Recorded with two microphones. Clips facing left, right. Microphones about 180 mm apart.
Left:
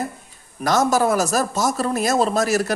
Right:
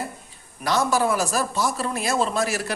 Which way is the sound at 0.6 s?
45° left (ahead or behind).